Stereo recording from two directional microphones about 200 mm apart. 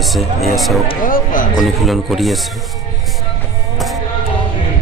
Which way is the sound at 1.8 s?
Centre (ahead or behind).